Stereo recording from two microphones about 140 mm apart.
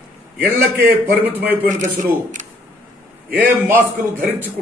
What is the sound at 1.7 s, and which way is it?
Speech, 60° right (ahead or behind).